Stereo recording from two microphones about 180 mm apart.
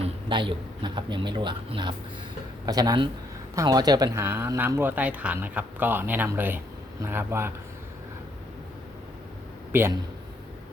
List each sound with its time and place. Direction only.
0.0 s speech: 25° right (ahead or behind)
9.7 s speech: 15° right (ahead or behind)